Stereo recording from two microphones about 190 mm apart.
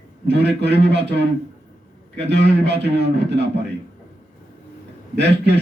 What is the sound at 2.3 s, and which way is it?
Speech, 65° right (ahead or behind).